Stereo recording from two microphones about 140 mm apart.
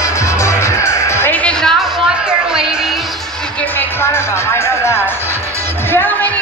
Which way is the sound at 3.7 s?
20° left (ahead or behind).